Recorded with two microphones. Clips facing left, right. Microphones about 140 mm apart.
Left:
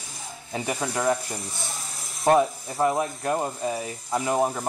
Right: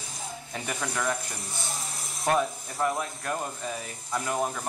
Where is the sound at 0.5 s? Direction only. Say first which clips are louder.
Left 6 dB; 25° left (ahead or behind).